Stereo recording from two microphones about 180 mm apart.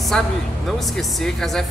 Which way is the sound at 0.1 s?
Centre (ahead or behind).